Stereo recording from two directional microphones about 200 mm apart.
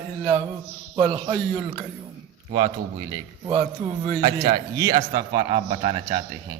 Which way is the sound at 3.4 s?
20° right (ahead or behind).